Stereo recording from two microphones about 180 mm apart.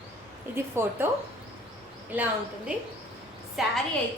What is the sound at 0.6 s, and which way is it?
Speech, 10° right (ahead or behind).